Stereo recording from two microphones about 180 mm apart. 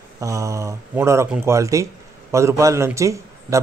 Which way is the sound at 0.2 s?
15° right (ahead or behind).